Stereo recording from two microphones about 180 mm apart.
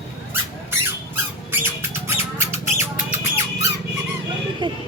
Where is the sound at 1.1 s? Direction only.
15° right (ahead or behind).